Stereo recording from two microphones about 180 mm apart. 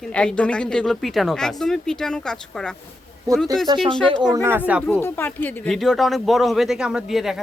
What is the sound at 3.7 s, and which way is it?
Speech, 30° right (ahead or behind).